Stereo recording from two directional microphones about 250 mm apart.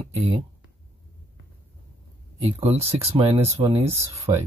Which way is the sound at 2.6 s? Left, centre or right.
Right.